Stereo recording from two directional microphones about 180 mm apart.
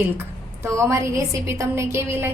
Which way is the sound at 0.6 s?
15° right (ahead or behind).